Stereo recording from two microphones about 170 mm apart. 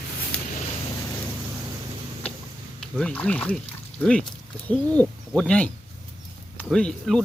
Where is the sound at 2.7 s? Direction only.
5° left (ahead or behind).